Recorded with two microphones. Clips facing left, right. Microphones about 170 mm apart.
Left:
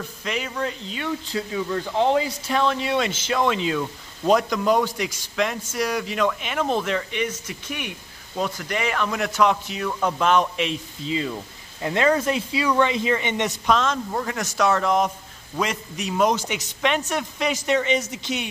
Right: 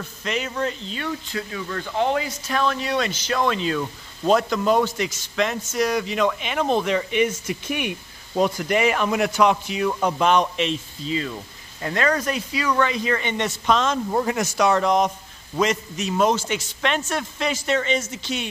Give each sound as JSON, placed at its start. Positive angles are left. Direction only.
{"t": 0.2, "sound": "speech", "side_deg": 5}
{"t": 2.0, "sound": "speech", "side_deg": 25}
{"t": 9.3, "sound": "speech", "side_deg": 0}
{"t": 10.2, "sound": "speech", "side_deg": 5}
{"t": 14.1, "sound": "speech", "side_deg": -20}
{"t": 14.6, "sound": "speech", "side_deg": 0}